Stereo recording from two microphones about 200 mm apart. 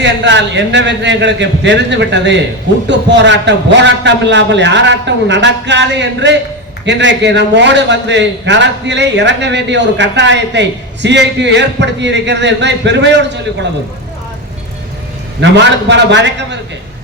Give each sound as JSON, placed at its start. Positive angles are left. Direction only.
{"t": 0.0, "sound": "a man's voice", "side_deg": -60}
{"t": 15.4, "sound": "a man's voice", "side_deg": -60}